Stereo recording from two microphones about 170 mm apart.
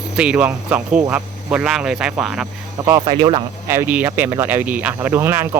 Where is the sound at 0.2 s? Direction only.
5° right (ahead or behind).